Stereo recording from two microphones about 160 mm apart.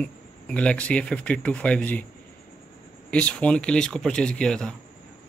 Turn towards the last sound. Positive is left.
turn(degrees=5)  # may be behind; listen again after turning